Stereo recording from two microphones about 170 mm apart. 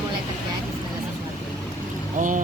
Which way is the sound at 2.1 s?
50° right (ahead or behind).